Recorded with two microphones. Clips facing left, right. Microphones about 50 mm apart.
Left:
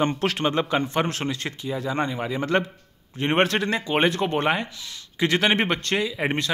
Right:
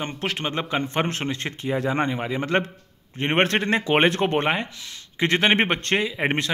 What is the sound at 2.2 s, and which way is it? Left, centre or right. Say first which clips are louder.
Speech: even; centre.